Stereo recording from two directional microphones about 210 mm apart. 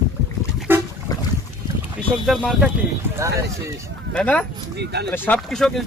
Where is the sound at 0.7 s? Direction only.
10° right (ahead or behind).